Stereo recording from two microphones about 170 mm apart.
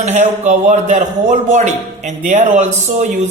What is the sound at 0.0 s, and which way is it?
A man's voice, 40° right (ahead or behind).